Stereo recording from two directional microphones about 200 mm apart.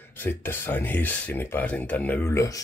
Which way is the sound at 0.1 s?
10° left (ahead or behind).